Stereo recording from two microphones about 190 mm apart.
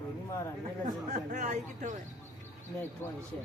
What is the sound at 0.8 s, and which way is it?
Speech, 40° right (ahead or behind).